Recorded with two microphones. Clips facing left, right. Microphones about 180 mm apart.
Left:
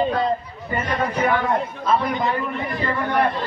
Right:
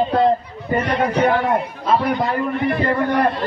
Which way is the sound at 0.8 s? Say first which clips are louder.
Right 4 dB; 70° right (ahead or behind).